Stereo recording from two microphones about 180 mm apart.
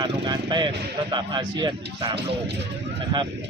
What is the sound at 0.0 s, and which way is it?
A man's voice, 25° right (ahead or behind).